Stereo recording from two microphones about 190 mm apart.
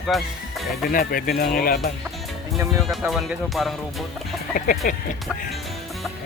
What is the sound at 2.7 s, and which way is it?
Speech, centre (ahead or behind).